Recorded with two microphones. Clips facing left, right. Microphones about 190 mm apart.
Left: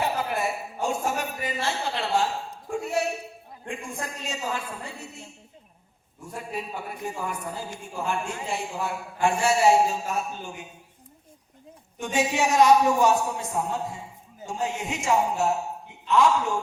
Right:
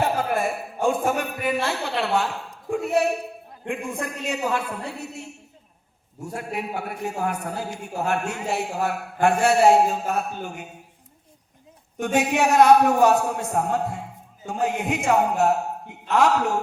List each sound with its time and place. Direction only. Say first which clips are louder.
0.0 s a man's voice: right 4 dB; 50° right (ahead or behind)
11.9 s a man's voice: right 4 dB; 65° right (ahead or behind)